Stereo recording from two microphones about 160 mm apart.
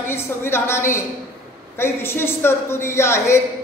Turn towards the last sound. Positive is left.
turn(degrees=15)  # may be behind; listen again after turning